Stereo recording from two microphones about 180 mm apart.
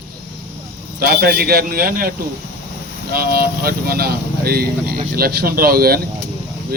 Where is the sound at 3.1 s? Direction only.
55° right (ahead or behind).